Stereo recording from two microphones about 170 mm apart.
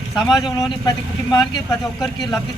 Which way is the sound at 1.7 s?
Centre (ahead or behind).